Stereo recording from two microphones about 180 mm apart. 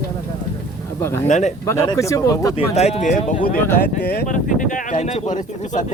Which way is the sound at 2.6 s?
35° left (ahead or behind).